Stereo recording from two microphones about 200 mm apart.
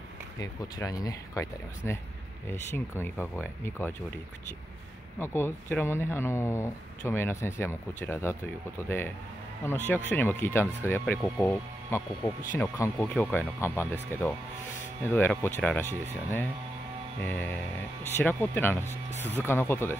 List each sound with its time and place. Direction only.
0.4 s speech: 15° left (ahead or behind)
2.7 s speech: 10° left (ahead or behind)
5.2 s speech: 10° left (ahead or behind)
15.0 s speech: 10° left (ahead or behind)
17.2 s speech: 10° left (ahead or behind)
18.9 s speech: 35° left (ahead or behind)
19.3 s speech: 10° left (ahead or behind)